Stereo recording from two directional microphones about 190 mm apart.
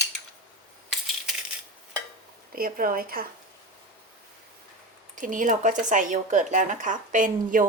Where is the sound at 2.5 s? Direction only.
50° right (ahead or behind).